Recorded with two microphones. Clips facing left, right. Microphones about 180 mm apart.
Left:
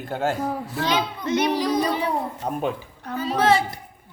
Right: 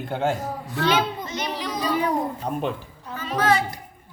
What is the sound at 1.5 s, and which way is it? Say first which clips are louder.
Child singing: left 4 dB; 35° left (ahead or behind).